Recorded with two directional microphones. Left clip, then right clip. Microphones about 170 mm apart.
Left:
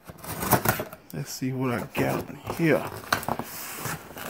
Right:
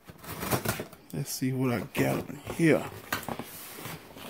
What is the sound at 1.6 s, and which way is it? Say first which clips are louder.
Speech: left 2 dB; 35° right (ahead or behind).